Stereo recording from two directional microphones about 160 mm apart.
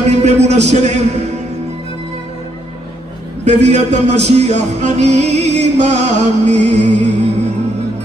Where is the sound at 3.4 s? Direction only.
45° right (ahead or behind).